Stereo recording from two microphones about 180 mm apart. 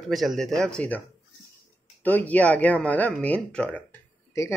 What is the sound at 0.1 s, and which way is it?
Speech, centre (ahead or behind).